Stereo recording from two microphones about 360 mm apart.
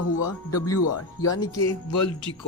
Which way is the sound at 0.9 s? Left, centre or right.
Left.